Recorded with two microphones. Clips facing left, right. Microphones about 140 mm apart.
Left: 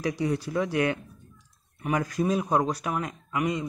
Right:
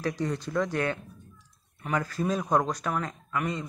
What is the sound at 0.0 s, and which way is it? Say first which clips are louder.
Speech: left 3 dB; 10° left (ahead or behind).